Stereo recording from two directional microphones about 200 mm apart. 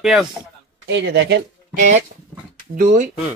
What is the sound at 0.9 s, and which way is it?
Speech, 60° right (ahead or behind).